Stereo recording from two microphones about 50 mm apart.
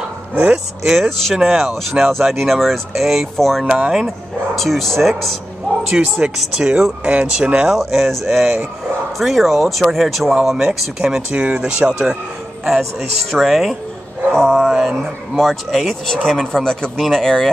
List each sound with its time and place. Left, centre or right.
0.8 s speech: centre
3.6 s speech: centre
5.9 s speech: centre
7.7 s speech: centre
8.3 s speech: centre
10.3 s speech: centre
11.3 s speech: right
13.3 s speech: centre
14.3 s speech: centre
14.7 s speech: centre